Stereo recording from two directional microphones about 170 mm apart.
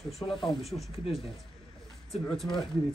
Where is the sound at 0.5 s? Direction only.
Centre (ahead or behind).